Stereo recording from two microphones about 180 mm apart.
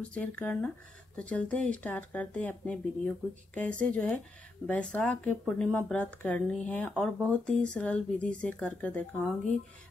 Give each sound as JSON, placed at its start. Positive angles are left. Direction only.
{"t": 0.1, "sound": "speech", "side_deg": 5}